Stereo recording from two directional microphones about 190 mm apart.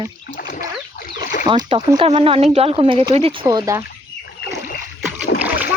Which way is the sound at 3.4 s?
20° right (ahead or behind).